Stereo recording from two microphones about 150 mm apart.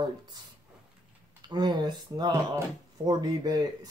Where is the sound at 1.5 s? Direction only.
30° right (ahead or behind).